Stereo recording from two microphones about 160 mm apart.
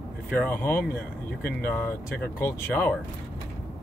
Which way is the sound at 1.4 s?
70° left (ahead or behind).